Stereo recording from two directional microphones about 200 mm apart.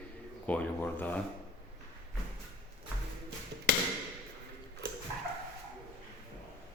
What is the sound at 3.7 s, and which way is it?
Hammer, 55° right (ahead or behind).